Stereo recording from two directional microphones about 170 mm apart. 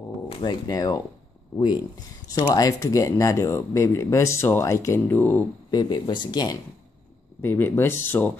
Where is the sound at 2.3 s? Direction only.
20° left (ahead or behind).